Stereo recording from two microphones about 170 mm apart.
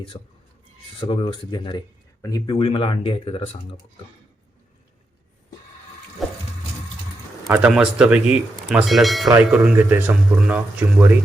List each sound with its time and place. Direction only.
0.1 s speech: 35° left (ahead or behind)
6.2 s water: centre (ahead or behind)
7.5 s speech: 5° right (ahead or behind)